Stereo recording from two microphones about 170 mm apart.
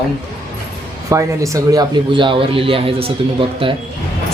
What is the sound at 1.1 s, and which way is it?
Speech, 20° right (ahead or behind).